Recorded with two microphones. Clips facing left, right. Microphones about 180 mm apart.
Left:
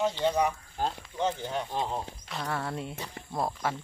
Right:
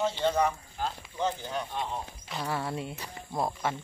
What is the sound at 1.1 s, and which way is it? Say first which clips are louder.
Speech: even; 20° left (ahead or behind).